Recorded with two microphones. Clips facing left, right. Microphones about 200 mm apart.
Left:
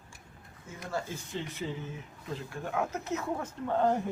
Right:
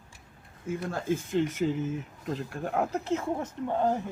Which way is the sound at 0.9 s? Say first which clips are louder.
Right 6 dB; 50° right (ahead or behind).